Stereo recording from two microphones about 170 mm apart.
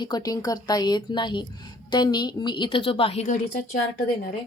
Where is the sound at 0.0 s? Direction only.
25° left (ahead or behind); by 3.8 s 40° left (ahead or behind).